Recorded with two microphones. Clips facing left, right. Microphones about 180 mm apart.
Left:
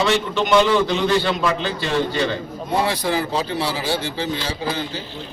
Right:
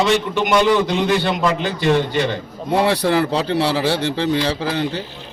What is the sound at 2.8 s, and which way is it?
Speech, 65° right (ahead or behind).